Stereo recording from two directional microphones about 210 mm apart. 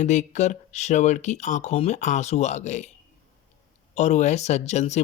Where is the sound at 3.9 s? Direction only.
35° left (ahead or behind).